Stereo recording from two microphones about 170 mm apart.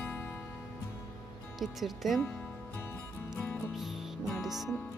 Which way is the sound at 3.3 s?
10° left (ahead or behind).